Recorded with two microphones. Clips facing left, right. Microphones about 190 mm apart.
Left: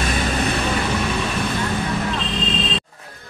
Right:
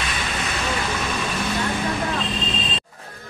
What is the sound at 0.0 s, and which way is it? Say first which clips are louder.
Vehicle: left 7 dB; 40° left (ahead or behind).